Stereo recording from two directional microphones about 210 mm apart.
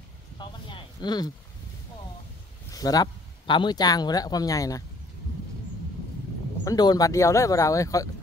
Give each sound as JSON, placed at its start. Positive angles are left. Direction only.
{"t": 0.4, "sound": "a sound", "side_deg": 20}
{"t": 2.7, "sound": "speech", "side_deg": 15}
{"t": 6.6, "sound": "speech", "side_deg": 20}